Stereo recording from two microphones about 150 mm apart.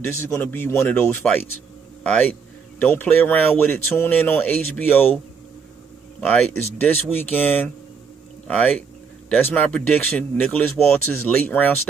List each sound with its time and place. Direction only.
0.0 s speech: 15° left (ahead or behind)
6.2 s speech: 5° left (ahead or behind)